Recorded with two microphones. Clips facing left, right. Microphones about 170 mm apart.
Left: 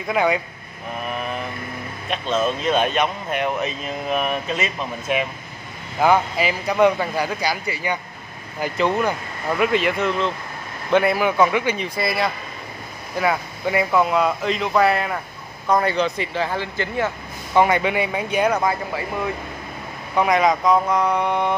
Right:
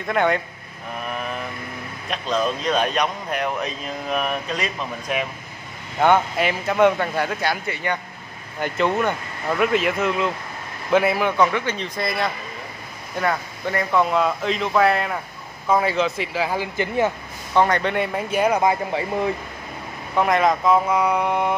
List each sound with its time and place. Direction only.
0.0 s speech: 5° left (ahead or behind)
2.0 s speech: centre (ahead or behind); by 17.1 s 15° right (ahead or behind)
17.6 s speech: 10° left (ahead or behind)
18.6 s speech: 20° right (ahead or behind)
20.2 s speech: centre (ahead or behind)